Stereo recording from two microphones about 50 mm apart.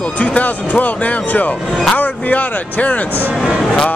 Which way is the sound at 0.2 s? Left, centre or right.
Left.